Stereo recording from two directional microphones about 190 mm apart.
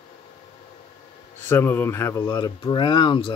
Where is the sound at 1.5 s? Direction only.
10° left (ahead or behind).